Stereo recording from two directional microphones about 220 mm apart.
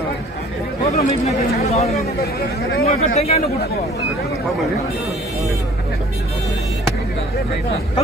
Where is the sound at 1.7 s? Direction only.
30° left (ahead or behind).